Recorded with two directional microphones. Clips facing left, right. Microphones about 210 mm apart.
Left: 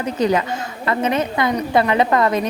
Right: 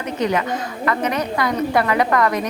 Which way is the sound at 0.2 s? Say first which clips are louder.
Left 2 dB; 30° left (ahead or behind).